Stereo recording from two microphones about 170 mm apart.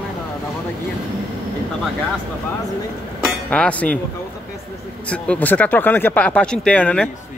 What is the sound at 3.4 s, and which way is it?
Speech, 10° left (ahead or behind).